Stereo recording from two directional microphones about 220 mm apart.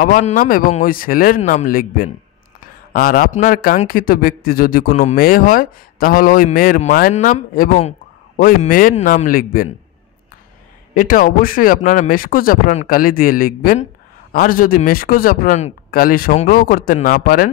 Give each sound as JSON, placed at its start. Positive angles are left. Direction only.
{"t": 0.0, "sound": "speech", "side_deg": 35}
{"t": 11.0, "sound": "speech", "side_deg": 40}